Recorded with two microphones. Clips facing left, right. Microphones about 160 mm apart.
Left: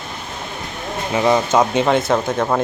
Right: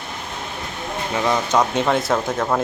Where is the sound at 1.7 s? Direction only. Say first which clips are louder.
Left 3 dB; centre (ahead or behind).